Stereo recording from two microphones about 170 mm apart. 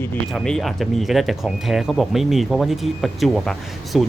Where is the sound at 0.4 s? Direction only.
Centre (ahead or behind).